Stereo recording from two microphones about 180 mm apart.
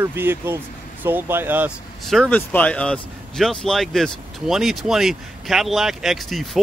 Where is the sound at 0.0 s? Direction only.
10° right (ahead or behind).